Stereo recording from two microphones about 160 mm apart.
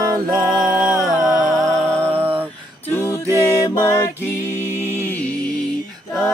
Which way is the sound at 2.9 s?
15° left (ahead or behind).